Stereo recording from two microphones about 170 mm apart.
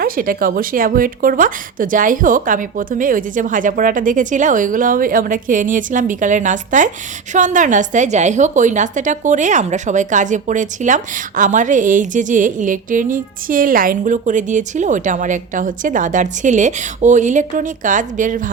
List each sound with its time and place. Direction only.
0.0 s a woman's voice: 55° right (ahead or behind)